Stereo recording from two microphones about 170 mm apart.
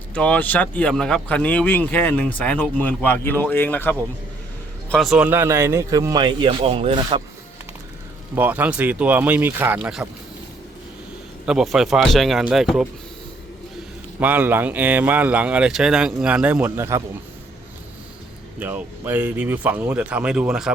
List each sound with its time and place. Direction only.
0.1 s speech: 5° left (ahead or behind)
4.9 s speech: centre (ahead or behind); by 7.2 s 30° right (ahead or behind)
8.4 s a man's voice: 10° right (ahead or behind)
11.4 s speech: 5° right (ahead or behind)
14.2 s a man's voice: 10° right (ahead or behind)
18.6 s a man's voice: 10° right (ahead or behind)